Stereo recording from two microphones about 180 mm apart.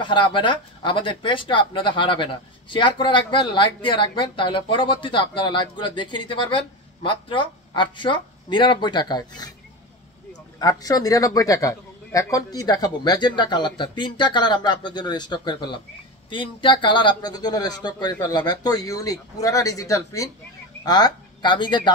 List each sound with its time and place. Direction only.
0.0 s speech: 25° left (ahead or behind)
10.6 s speech: 20° left (ahead or behind)